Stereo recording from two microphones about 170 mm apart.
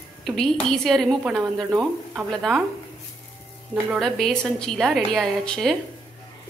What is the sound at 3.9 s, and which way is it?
A woman's voice, centre (ahead or behind).